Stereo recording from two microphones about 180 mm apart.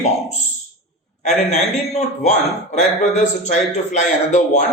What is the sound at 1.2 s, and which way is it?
A man's voice, 40° left (ahead or behind).